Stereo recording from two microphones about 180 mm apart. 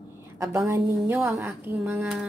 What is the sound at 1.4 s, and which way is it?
Speech, 10° right (ahead or behind).